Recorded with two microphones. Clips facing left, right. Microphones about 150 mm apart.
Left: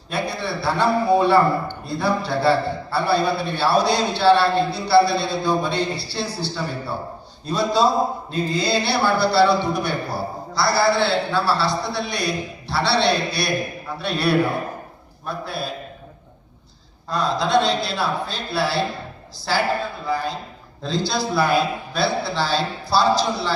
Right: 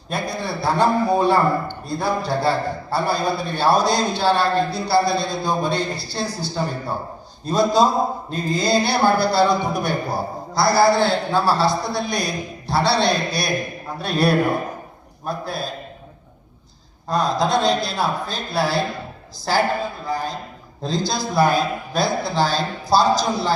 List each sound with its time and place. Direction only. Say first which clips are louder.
0.1 s a man's voice: even; 40° right (ahead or behind)
17.1 s a man's voice: right 1 dB; 45° right (ahead or behind)